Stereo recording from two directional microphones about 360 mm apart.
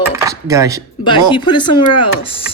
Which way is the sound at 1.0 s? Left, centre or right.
Centre.